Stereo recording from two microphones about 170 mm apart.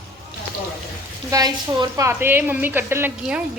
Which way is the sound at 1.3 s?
25° right (ahead or behind).